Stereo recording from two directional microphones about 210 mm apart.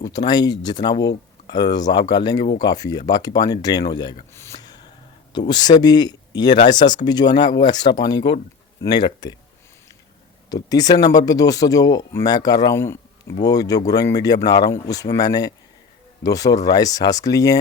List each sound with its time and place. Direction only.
0.0 s speech: 20° left (ahead or behind)
10.5 s speech: 20° left (ahead or behind)